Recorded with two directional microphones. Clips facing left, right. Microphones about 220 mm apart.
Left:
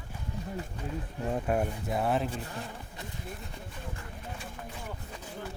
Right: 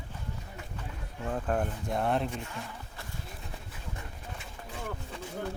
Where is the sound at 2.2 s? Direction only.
30° left (ahead or behind).